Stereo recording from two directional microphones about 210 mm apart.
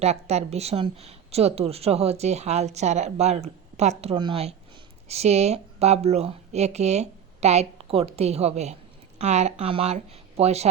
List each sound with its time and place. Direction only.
0.0 s a woman's voice: 30° right (ahead or behind)